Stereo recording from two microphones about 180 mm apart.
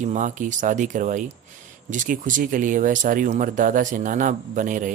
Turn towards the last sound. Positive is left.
turn(degrees=-45)  # may be behind; listen again after turning